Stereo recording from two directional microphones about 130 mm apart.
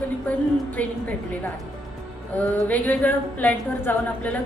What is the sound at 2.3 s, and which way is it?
A woman's voice, 15° left (ahead or behind).